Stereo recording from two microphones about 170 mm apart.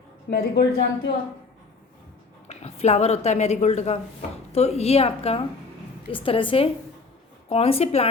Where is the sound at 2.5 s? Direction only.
40° left (ahead or behind).